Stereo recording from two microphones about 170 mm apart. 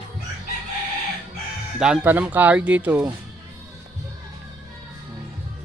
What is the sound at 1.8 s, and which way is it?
Speech, 5° right (ahead or behind).